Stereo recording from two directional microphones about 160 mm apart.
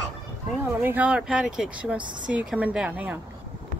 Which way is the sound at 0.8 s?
10° right (ahead or behind).